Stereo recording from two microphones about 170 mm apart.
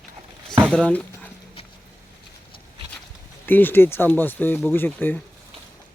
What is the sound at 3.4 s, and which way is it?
A man's voice, 10° left (ahead or behind).